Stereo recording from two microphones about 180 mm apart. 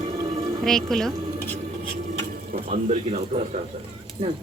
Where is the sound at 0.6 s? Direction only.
Centre (ahead or behind).